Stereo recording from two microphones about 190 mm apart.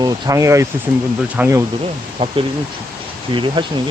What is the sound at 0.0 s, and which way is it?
Speech, 15° right (ahead or behind).